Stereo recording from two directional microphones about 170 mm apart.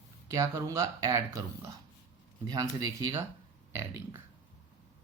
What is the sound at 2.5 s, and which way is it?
Speech, 20° right (ahead or behind).